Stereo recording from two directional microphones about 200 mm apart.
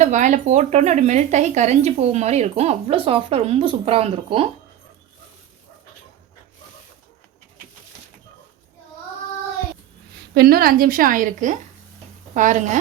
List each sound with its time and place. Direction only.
0.0 s speech: 35° right (ahead or behind)
10.3 s a woman's voice: 50° right (ahead or behind)